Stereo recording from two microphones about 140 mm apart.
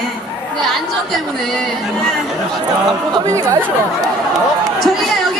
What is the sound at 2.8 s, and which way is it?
Speech, 30° right (ahead or behind).